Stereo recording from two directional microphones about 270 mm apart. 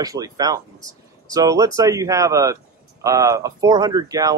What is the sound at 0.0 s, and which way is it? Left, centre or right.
Speech, centre.